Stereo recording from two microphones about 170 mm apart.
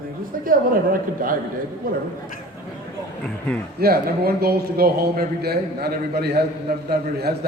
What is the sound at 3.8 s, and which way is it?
A man's voice, 65° right (ahead or behind).